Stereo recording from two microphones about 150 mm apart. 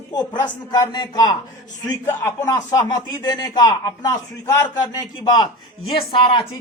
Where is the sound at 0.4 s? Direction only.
30° left (ahead or behind).